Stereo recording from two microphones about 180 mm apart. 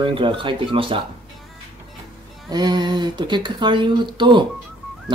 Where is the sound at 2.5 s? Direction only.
20° right (ahead or behind).